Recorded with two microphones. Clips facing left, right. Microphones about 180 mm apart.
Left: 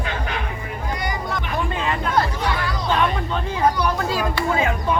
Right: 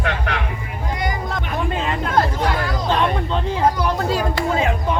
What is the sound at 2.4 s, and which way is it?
Hubbub, 45° right (ahead or behind).